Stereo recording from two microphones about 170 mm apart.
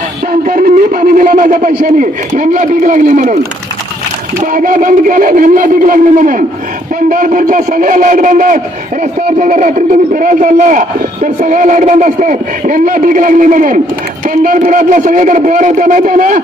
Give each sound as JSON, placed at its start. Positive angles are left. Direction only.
{"t": 0.3, "sound": "a man's voice", "side_deg": -55}
{"t": 4.4, "sound": "a man's voice", "side_deg": -50}